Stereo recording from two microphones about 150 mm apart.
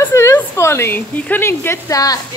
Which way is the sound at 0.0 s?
20° left (ahead or behind).